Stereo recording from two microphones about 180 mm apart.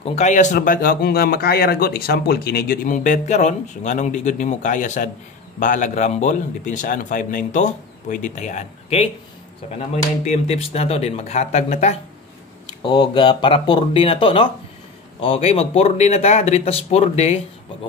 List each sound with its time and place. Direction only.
0.0 s speech: 40° left (ahead or behind)
10.2 s speech: 35° left (ahead or behind)
12.8 s speech: 25° left (ahead or behind)